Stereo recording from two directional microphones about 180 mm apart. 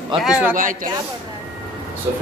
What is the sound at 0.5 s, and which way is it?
Speech, 45° right (ahead or behind).